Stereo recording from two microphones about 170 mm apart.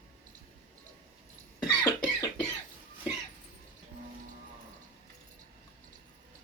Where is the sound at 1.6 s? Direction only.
25° left (ahead or behind).